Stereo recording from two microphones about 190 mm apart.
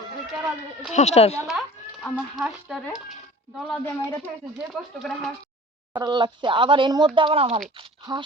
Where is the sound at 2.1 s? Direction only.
Centre (ahead or behind).